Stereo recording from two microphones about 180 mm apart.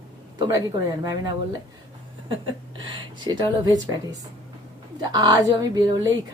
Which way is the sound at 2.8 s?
25° right (ahead or behind).